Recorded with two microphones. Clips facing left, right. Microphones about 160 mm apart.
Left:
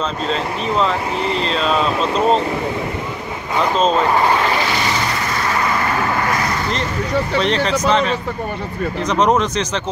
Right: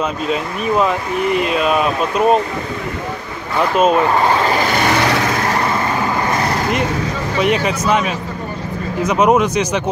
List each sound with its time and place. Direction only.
0.3 s speech: 10° right (ahead or behind)
3.7 s speech: 10° right (ahead or behind)
5.0 s vehicle: 75° right (ahead or behind)
7.3 s speech: 10° right (ahead or behind)